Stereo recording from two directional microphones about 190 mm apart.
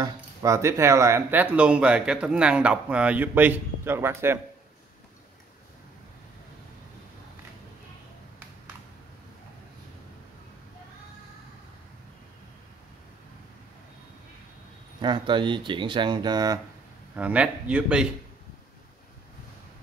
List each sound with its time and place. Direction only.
0.0 s speech: 15° right (ahead or behind)
15.0 s speech: 25° right (ahead or behind)
17.1 s speech: 5° right (ahead or behind)